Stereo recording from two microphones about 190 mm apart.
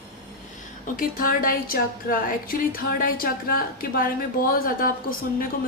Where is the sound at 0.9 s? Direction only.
50° left (ahead or behind).